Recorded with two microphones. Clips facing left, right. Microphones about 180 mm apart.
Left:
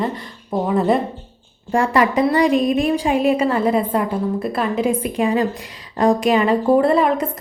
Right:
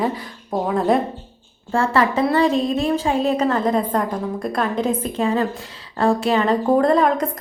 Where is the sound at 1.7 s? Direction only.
15° left (ahead or behind).